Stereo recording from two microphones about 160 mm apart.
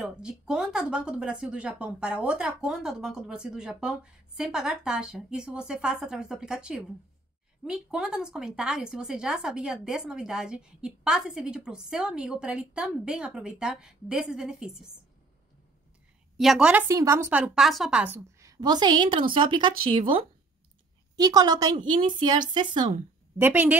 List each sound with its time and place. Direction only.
0.0 s speech: 5° right (ahead or behind)
16.3 s speech: 5° right (ahead or behind)
16.8 s a woman's voice: 20° right (ahead or behind)
18.4 s a woman's voice: 25° right (ahead or behind)
21.2 s a woman's voice: 25° right (ahead or behind)
23.3 s a woman's voice: 10° right (ahead or behind)